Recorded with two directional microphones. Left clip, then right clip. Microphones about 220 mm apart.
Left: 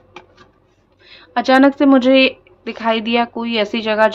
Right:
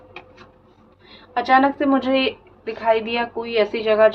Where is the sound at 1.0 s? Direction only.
50° left (ahead or behind).